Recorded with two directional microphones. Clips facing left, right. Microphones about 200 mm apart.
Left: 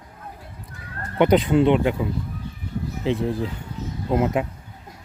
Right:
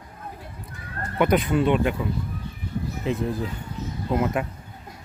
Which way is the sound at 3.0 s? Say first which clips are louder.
Left 3 dB; 25° left (ahead or behind).